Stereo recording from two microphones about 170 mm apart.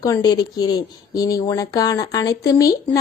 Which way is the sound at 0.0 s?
25° left (ahead or behind).